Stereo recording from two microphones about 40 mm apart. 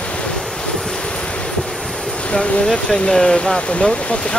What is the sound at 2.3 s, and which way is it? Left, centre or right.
Speech, centre.